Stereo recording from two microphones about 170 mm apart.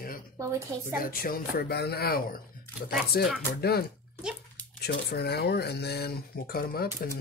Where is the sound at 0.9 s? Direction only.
55° left (ahead or behind).